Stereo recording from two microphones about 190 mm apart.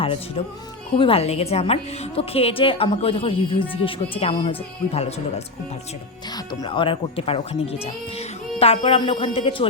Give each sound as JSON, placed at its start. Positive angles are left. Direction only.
{"t": 0.0, "sound": "a woman's voice", "side_deg": 30}
{"t": 6.3, "sound": "a woman's voice", "side_deg": 20}